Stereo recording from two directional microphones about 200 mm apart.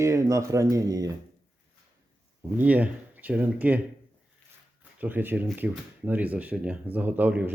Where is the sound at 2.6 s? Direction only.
5° right (ahead or behind).